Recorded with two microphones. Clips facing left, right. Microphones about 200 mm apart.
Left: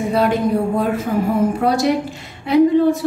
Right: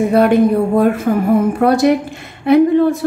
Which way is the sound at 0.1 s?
55° right (ahead or behind).